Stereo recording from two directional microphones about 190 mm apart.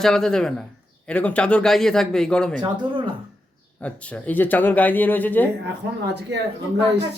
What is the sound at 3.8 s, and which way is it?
Speech, 5° left (ahead or behind).